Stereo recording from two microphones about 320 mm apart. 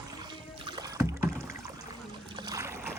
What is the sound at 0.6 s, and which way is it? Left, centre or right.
Rowboat, centre.